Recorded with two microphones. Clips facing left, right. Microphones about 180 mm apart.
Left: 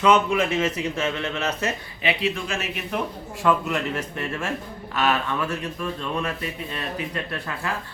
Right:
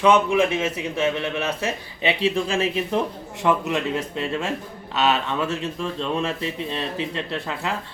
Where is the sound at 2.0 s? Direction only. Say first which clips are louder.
Right 4 dB; 30° right (ahead or behind).